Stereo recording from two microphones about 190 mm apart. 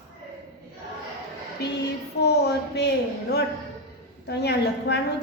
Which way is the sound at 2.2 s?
60° left (ahead or behind).